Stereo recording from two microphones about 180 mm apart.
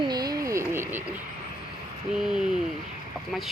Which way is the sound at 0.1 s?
20° right (ahead or behind).